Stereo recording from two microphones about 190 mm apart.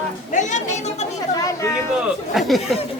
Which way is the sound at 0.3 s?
40° left (ahead or behind).